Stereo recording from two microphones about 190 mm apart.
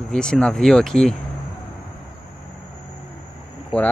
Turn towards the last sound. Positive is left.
turn(degrees=30)  # may be behind; listen again after turning